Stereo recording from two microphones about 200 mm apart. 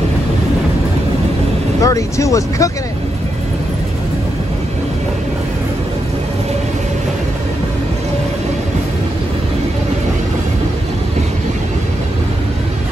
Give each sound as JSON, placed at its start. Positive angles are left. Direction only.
{"t": 1.8, "sound": "speech", "side_deg": 15}